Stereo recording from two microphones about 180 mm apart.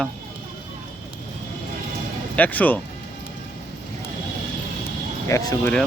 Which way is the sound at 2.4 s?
10° left (ahead or behind).